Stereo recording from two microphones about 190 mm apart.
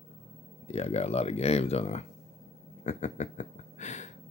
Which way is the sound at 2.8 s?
40° left (ahead or behind).